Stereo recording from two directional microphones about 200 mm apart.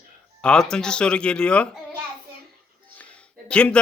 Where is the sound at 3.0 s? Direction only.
5° left (ahead or behind).